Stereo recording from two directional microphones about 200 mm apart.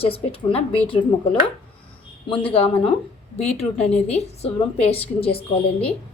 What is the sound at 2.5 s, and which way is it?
A woman's voice, 30° left (ahead or behind).